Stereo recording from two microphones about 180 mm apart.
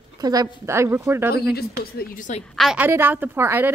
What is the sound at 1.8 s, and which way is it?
Speech, 50° left (ahead or behind).